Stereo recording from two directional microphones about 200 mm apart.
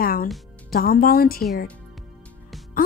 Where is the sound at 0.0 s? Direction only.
45° left (ahead or behind).